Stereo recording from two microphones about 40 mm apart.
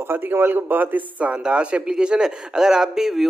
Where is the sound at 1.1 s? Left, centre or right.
Right; by 3.3 s centre.